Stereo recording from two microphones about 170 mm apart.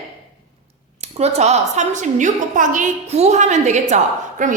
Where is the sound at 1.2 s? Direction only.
40° right (ahead or behind).